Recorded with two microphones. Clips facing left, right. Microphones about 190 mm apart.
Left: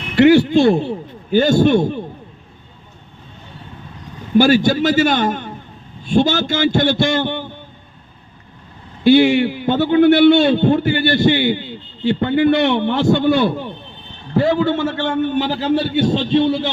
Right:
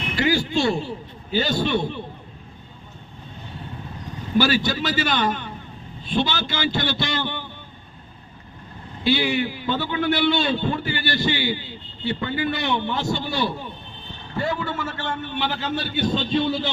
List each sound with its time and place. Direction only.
0.2 s speech: 65° left (ahead or behind); by 2.0 s 45° left (ahead or behind)
4.4 s speech: 50° left (ahead or behind)
9.0 s a man's voice: 50° left (ahead or behind)
14.3 s a man's voice: 90° left; by 15.2 s 75° left (ahead or behind)
15.3 s a man's voice: 40° left (ahead or behind)